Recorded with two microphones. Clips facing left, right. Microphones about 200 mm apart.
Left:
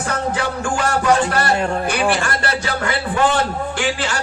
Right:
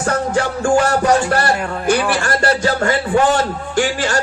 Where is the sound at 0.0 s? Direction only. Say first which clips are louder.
Right 4 dB; 45° right (ahead or behind).